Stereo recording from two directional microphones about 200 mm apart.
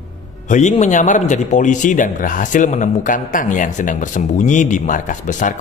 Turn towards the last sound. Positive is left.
turn(degrees=40)  # may be behind; listen again after turning